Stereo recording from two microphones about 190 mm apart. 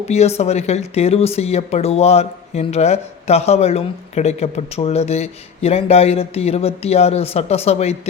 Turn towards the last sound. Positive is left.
turn(degrees=35)  # may be behind; listen again after turning